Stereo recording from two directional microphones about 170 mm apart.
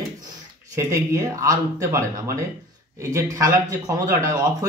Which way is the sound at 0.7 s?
15° right (ahead or behind).